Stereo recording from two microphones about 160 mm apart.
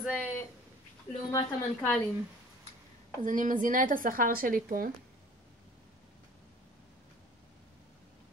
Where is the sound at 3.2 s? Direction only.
55° right (ahead or behind).